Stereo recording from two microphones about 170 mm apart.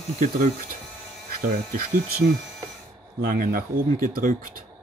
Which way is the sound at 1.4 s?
55° right (ahead or behind).